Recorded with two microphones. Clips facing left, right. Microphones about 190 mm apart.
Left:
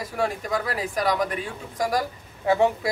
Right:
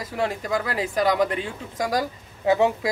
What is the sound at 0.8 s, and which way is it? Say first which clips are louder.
A woman's voice: right 5 dB; 25° right (ahead or behind).